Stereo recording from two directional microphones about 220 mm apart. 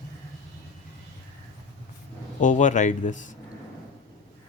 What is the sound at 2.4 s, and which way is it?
Speech, 35° left (ahead or behind).